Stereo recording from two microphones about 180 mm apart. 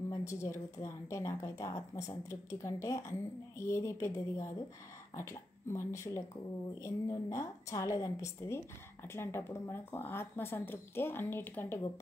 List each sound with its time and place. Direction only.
0.1 s a woman's voice: 15° left (ahead or behind)